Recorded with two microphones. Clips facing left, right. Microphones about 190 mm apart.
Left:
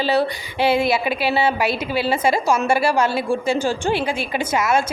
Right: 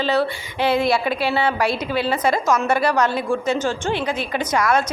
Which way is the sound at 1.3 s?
25° left (ahead or behind).